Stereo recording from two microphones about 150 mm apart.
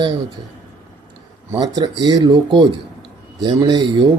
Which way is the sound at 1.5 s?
25° right (ahead or behind).